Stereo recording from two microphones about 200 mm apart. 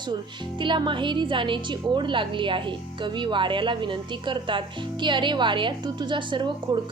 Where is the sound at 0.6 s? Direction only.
25° right (ahead or behind).